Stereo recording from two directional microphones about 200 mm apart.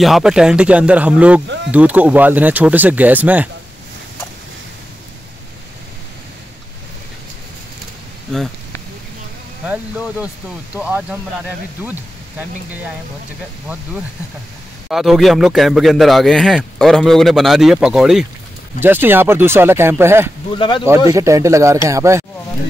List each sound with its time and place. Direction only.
0.0 s a man's voice: centre (ahead or behind)
8.3 s a sound: centre (ahead or behind)
9.7 s speech: 5° right (ahead or behind)
14.9 s a man's voice: centre (ahead or behind)
20.5 s speech: 25° left (ahead or behind)
21.1 s speech: 15° right (ahead or behind)